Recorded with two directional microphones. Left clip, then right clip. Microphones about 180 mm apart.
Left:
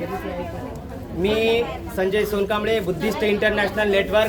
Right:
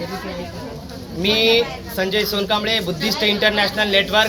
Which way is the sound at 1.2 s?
5° left (ahead or behind).